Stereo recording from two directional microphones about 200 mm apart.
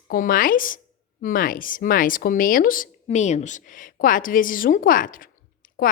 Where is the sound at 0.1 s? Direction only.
45° left (ahead or behind).